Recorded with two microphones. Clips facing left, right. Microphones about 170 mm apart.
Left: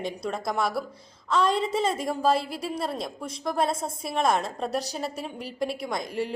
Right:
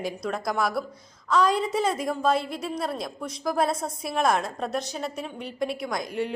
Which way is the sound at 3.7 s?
25° left (ahead or behind).